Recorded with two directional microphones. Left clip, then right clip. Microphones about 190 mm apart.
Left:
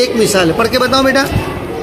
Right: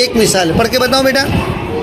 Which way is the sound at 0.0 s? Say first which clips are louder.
Even; 10° right (ahead or behind).